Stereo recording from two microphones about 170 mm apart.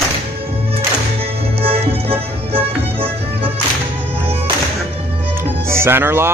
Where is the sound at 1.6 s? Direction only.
35° right (ahead or behind).